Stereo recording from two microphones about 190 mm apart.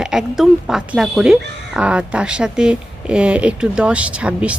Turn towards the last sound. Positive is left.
turn(degrees=-5)  # may be behind; listen again after turning